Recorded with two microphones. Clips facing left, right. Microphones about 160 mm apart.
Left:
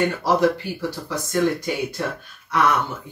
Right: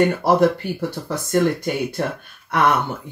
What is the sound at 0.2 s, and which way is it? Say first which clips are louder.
Speech: right 3 dB; 55° right (ahead or behind).